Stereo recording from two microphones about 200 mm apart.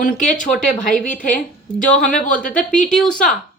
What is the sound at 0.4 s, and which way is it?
Speech, centre (ahead or behind).